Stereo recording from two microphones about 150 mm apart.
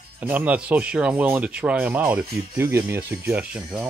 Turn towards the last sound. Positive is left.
turn(degrees=-10)  # may be behind; listen again after turning